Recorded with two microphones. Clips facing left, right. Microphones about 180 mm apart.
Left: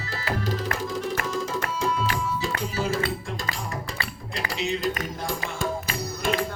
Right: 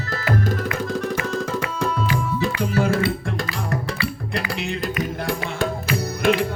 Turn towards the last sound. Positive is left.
turn(degrees=-65)  # may be behind; listen again after turning